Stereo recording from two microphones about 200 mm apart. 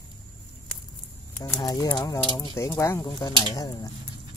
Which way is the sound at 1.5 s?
20° left (ahead or behind).